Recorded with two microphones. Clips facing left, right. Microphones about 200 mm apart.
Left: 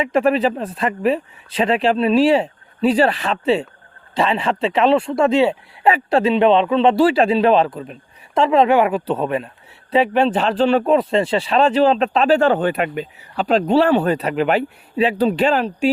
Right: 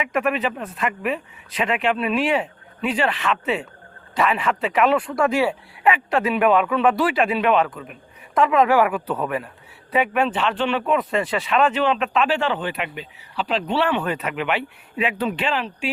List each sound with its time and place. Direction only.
0.0 s speech: 30° left (ahead or behind)